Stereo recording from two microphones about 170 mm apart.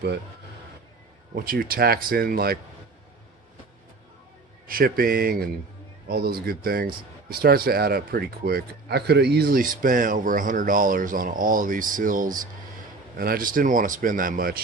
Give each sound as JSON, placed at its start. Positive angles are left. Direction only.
{"t": 1.4, "sound": "speech", "side_deg": -60}
{"t": 4.6, "sound": "speech", "side_deg": -55}